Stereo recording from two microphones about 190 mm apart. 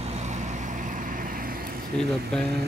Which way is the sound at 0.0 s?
35° right (ahead or behind).